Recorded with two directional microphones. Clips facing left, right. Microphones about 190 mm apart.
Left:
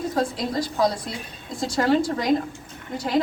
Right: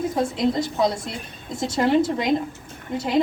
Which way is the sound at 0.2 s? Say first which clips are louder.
Right 3 dB; 25° right (ahead or behind).